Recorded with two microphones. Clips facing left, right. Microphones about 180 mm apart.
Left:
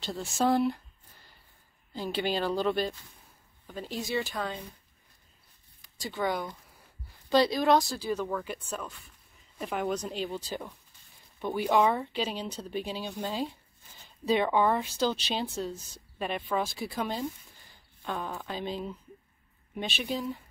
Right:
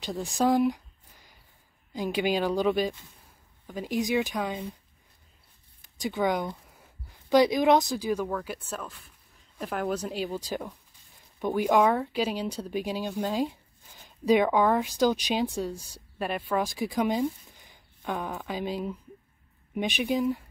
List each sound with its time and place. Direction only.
0.6 s a sound: 15° right (ahead or behind)
2.1 s speech: 10° right (ahead or behind)
5.9 s speech: 20° right (ahead or behind)
8.3 s a woman's voice: centre (ahead or behind)